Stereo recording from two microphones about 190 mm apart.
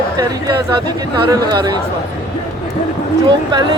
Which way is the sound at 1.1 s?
20° right (ahead or behind).